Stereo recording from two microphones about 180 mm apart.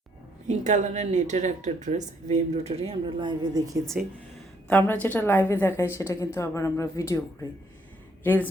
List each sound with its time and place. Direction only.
0.4 s speech: 40° right (ahead or behind); by 3.8 s 25° right (ahead or behind)
4.0 s speech: 5° right (ahead or behind)
4.7 s a woman's voice: 10° left (ahead or behind)
8.2 s speech: 10° left (ahead or behind)